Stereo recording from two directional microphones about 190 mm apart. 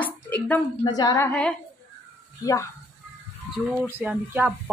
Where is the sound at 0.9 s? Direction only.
20° left (ahead or behind).